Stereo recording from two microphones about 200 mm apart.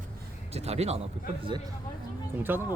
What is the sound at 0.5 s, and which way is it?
Speech, 30° right (ahead or behind).